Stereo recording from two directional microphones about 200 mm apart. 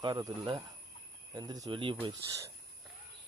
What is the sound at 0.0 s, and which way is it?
Speech, 20° right (ahead or behind).